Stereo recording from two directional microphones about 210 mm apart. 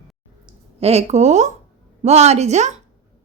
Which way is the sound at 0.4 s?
30° right (ahead or behind).